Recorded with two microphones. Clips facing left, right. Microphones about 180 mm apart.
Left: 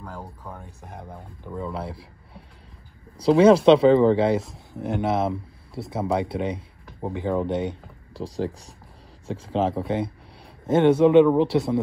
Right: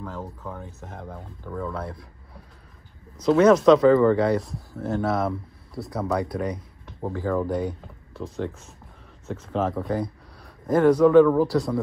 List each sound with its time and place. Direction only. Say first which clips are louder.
0.0 s speech: right 3 dB; 10° left (ahead or behind)
1.8 s a man's voice: left 1 dB; 30° left (ahead or behind)